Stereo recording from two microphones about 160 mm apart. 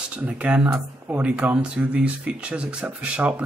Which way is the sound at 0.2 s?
5° right (ahead or behind).